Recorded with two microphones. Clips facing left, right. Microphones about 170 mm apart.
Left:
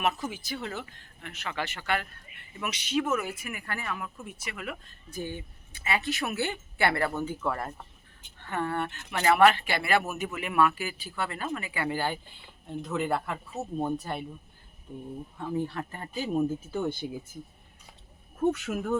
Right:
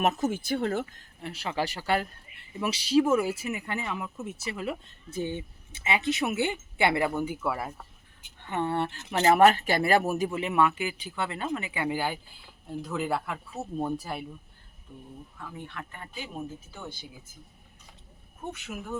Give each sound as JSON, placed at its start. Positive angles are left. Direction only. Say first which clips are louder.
{"t": 0.0, "sound": "speech", "louder": "right 4 dB", "side_deg": -45}
{"t": 1.2, "sound": "speech", "louder": "right 4 dB", "side_deg": -35}
{"t": 8.4, "sound": "speech", "louder": "right 2 dB", "side_deg": -20}
{"t": 9.3, "sound": "speech", "louder": "right 1 dB", "side_deg": -40}
{"t": 15.4, "sound": "speech", "louder": "left 10 dB", "side_deg": 30}
{"t": 16.7, "sound": "speech", "louder": "left 12 dB", "side_deg": 55}
{"t": 18.3, "sound": "speech", "louder": "left 11 dB", "side_deg": 65}